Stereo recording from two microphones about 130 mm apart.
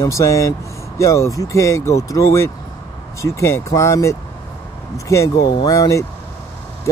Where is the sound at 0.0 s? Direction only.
25° left (ahead or behind).